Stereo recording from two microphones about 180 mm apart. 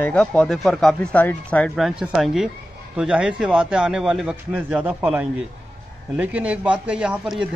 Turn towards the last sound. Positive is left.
turn(degrees=-5)  # may be behind; listen again after turning